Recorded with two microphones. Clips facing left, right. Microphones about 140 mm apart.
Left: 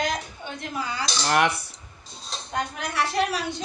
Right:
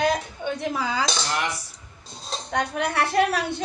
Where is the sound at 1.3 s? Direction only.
60° left (ahead or behind).